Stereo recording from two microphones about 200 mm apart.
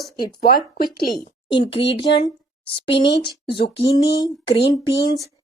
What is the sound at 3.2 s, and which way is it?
Speech, 55° left (ahead or behind).